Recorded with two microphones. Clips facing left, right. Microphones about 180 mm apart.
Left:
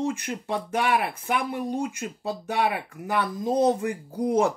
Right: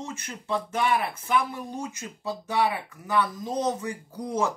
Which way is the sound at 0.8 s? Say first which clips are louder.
Left 1 dB; 55° left (ahead or behind).